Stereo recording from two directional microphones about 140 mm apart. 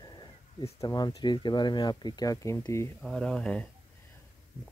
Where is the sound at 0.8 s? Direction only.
25° left (ahead or behind).